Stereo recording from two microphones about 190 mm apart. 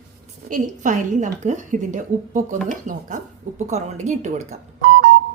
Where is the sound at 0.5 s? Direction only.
40° right (ahead or behind).